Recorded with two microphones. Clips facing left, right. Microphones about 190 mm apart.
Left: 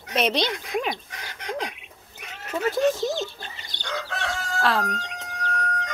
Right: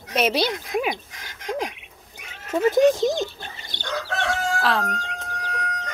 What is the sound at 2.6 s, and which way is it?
Speech, 15° right (ahead or behind).